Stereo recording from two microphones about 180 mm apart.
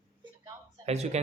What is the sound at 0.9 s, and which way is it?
Speech, 35° right (ahead or behind).